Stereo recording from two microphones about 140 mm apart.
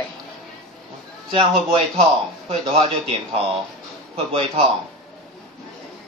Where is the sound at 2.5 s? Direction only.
45° right (ahead or behind).